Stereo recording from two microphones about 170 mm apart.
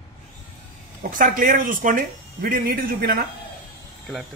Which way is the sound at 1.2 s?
55° right (ahead or behind).